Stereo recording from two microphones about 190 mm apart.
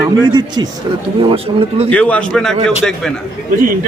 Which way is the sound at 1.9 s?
5° left (ahead or behind).